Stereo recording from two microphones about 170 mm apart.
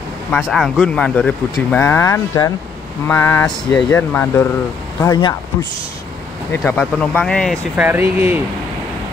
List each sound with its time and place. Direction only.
0.3 s speech: centre (ahead or behind); by 5.3 s 20° left (ahead or behind)
6.5 s speech: 10° left (ahead or behind)
7.7 s speech: 10° right (ahead or behind)